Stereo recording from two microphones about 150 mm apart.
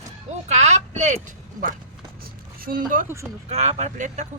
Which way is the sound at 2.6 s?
70° right (ahead or behind).